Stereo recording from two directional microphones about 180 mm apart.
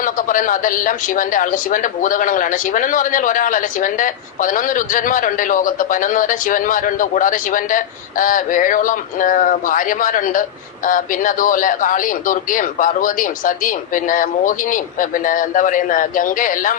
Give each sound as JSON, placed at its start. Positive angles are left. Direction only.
{"t": 0.0, "sound": "speech", "side_deg": 50}